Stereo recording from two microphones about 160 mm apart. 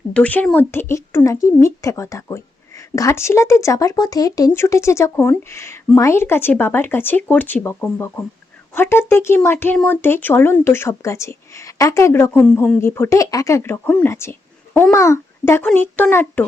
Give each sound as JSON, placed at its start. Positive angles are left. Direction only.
{"t": 0.1, "sound": "speech", "side_deg": 10}